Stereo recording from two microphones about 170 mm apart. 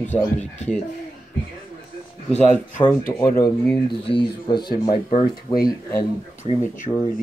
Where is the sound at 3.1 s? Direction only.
15° left (ahead or behind).